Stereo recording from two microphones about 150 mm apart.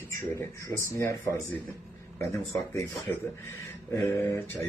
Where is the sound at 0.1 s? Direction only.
20° left (ahead or behind).